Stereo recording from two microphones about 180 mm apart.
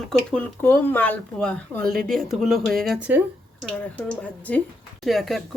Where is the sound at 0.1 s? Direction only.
5° left (ahead or behind).